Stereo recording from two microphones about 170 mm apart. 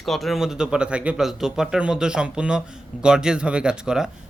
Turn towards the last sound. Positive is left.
turn(degrees=-5)  # may be behind; listen again after turning